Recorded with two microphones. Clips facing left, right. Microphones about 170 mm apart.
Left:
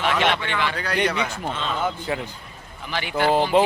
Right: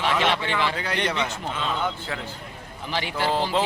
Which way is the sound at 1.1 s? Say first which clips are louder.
Left 2 dB; 10° left (ahead or behind).